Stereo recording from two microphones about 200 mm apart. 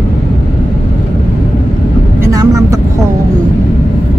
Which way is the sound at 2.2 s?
15° right (ahead or behind).